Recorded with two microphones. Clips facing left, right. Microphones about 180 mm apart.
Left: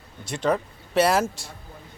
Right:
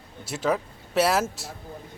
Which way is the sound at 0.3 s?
5° right (ahead or behind).